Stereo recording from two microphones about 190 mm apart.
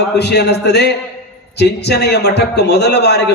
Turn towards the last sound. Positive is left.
turn(degrees=60)  # may be behind; listen again after turning